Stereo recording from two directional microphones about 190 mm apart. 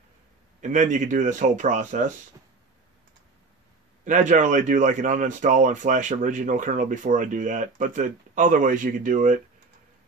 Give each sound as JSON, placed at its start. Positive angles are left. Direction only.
{"t": 0.6, "sound": "speech", "side_deg": -40}
{"t": 4.0, "sound": "speech", "side_deg": -40}